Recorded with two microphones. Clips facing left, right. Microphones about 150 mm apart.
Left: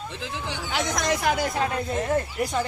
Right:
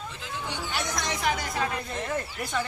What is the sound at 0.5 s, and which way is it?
Speech, 90° left.